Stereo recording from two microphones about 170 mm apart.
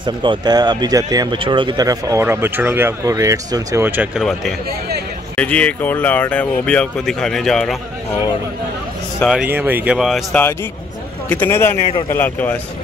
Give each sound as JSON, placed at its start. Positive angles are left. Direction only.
{"t": 0.0, "sound": "speech", "side_deg": -30}
{"t": 4.2, "sound": "speech", "side_deg": 0}
{"t": 9.2, "sound": "speech", "side_deg": -5}
{"t": 11.2, "sound": "speech", "side_deg": 10}